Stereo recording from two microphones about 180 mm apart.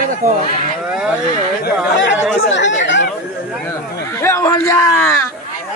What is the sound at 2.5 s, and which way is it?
Speech, 80° left.